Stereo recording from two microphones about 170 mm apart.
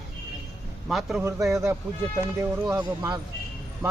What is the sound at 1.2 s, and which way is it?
Speech, 20° right (ahead or behind).